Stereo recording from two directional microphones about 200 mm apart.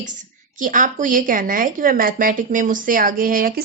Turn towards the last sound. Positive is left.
turn(degrees=-45)  # may be behind; listen again after turning